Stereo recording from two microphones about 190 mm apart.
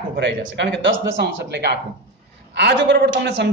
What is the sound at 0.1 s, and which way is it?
A man's voice, 65° right (ahead or behind).